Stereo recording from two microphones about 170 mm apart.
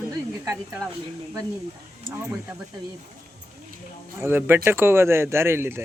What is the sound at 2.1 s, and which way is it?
Speech, 15° right (ahead or behind).